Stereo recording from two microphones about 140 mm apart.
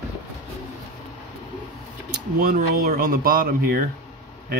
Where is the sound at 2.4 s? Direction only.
85° right.